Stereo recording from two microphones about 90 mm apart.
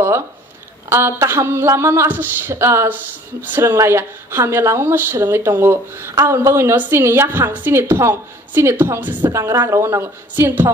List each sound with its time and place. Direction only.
0.8 s a woman's voice: 30° right (ahead or behind)